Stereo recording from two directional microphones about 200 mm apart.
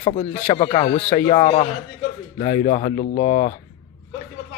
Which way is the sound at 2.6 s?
35° left (ahead or behind).